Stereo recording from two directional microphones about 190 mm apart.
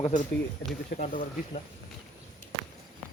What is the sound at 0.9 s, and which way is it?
Speech, 45° left (ahead or behind).